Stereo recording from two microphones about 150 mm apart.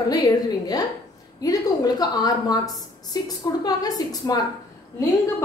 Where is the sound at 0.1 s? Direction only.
25° left (ahead or behind).